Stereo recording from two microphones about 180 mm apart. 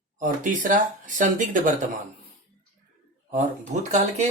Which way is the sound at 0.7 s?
45° right (ahead or behind).